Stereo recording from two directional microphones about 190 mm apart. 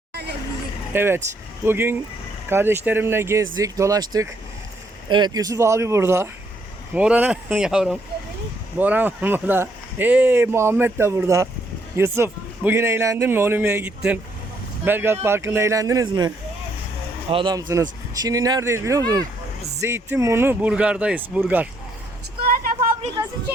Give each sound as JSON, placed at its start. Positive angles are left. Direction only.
{"t": 0.1, "sound": "vehicle", "side_deg": -60}
{"t": 0.9, "sound": "speech", "side_deg": -10}
{"t": 22.4, "sound": "vehicle", "side_deg": -50}